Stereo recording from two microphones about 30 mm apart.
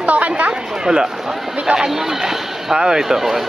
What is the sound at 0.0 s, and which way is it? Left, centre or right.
Chatter, right.